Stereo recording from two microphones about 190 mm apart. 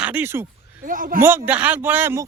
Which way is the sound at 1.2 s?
10° right (ahead or behind).